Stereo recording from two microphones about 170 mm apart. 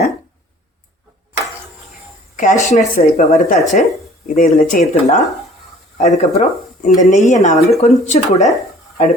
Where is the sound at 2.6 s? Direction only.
45° left (ahead or behind).